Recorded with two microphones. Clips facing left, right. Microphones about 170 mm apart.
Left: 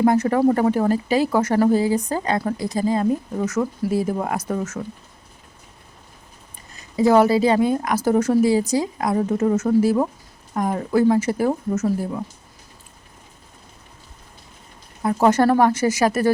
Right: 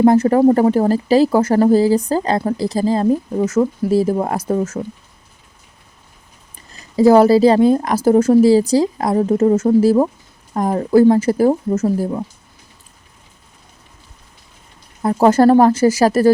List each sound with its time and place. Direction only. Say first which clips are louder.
0.0 s speech: right 6 dB; 30° right (ahead or behind)
6.9 s speech: right 5 dB; 35° right (ahead or behind)
15.0 s speech: right 5 dB; 30° right (ahead or behind)